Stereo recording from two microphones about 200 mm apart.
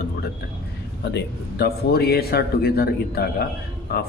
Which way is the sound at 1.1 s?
55° left (ahead or behind).